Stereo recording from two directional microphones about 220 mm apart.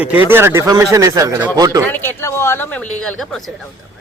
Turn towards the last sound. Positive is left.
turn(degrees=5)  # may be behind; listen again after turning